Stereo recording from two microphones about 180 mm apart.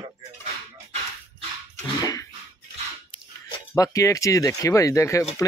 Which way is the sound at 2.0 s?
20° left (ahead or behind).